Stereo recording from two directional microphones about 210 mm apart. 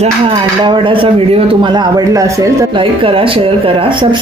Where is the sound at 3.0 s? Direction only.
25° right (ahead or behind).